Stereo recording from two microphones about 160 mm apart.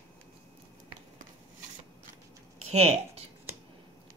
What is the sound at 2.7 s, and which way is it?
Speech, 40° right (ahead or behind).